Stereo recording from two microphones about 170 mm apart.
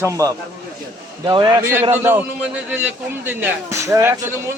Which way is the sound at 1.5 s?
15° right (ahead or behind).